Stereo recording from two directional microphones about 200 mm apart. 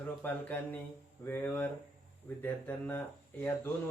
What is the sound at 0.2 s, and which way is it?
Speech, 10° left (ahead or behind).